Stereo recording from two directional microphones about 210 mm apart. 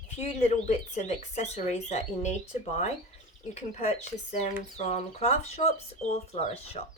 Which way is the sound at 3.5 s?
30° left (ahead or behind).